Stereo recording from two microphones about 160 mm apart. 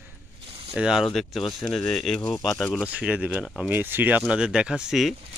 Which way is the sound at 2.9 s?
10° right (ahead or behind).